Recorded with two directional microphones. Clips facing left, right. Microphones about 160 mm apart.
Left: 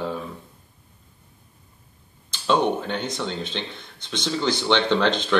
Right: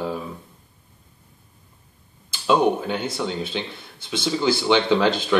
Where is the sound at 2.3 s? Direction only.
10° right (ahead or behind).